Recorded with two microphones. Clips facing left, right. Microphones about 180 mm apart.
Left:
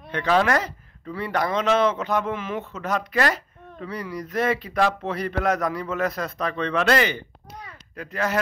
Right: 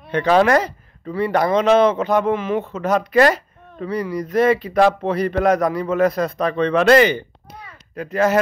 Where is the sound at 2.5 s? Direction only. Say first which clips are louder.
Right 8 dB; 35° right (ahead or behind).